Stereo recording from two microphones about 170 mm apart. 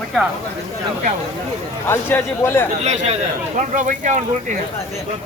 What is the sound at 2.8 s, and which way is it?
Speech, 40° right (ahead or behind).